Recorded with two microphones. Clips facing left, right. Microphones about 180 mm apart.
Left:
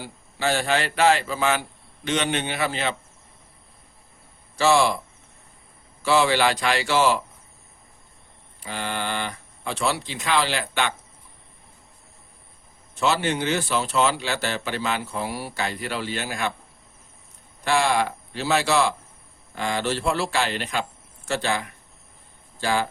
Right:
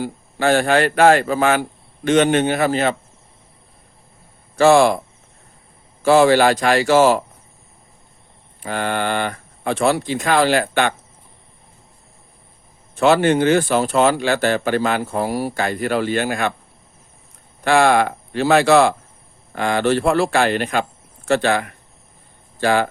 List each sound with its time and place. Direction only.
0.0 s speech: 55° right (ahead or behind)
4.5 s speech: 50° right (ahead or behind)
6.0 s speech: 50° right (ahead or behind)
8.6 s speech: 55° right (ahead or behind)
13.0 s speech: 55° right (ahead or behind)
17.6 s speech: 60° right (ahead or behind)